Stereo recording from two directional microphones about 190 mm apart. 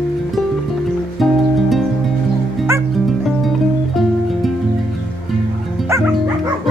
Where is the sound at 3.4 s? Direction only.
Centre (ahead or behind).